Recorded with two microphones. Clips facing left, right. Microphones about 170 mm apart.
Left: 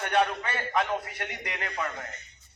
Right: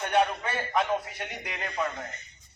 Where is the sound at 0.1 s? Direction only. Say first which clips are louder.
Right 1 dB; 10° right (ahead or behind).